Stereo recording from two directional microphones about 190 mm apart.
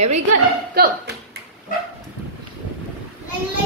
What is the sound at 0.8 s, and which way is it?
Speech, 55° right (ahead or behind).